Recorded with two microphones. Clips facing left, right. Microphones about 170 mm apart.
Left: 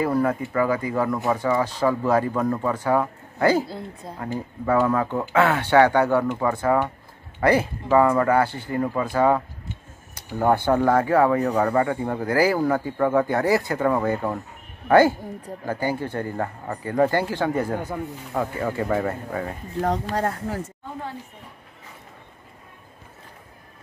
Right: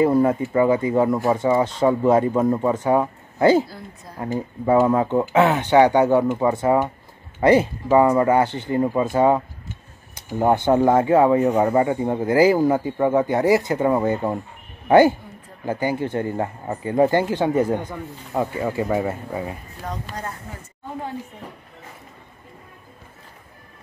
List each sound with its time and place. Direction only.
0.0 s speech: 25° right (ahead or behind)
3.6 s a woman's voice: 25° left (ahead or behind)
4.6 s speech: 20° right (ahead or behind)
19.9 s speech: 75° left (ahead or behind)